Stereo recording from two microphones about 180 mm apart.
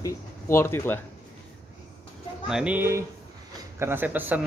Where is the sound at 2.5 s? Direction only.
5° right (ahead or behind).